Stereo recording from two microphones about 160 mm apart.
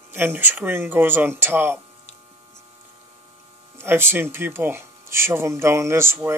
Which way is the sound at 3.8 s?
15° right (ahead or behind).